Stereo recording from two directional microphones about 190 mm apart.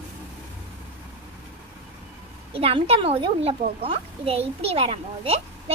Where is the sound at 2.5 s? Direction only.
30° right (ahead or behind).